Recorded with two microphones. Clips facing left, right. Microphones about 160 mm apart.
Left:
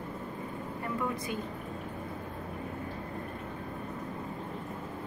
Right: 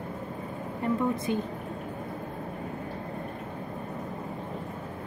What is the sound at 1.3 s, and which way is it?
Speech, 25° right (ahead or behind).